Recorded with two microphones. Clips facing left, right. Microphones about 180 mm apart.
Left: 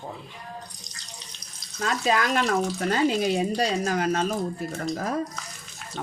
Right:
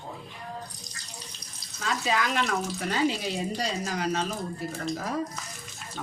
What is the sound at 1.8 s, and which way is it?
Speech, 50° left (ahead or behind).